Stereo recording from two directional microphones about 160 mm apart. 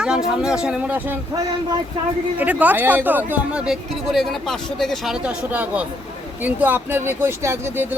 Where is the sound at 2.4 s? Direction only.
10° right (ahead or behind).